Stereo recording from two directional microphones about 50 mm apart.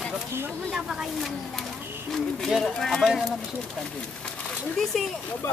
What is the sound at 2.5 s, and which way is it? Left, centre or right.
Speech, centre.